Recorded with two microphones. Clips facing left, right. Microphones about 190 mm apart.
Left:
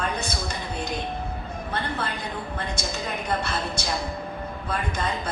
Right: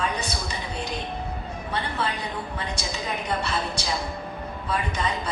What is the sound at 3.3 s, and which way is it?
A woman's voice, 55° left (ahead or behind).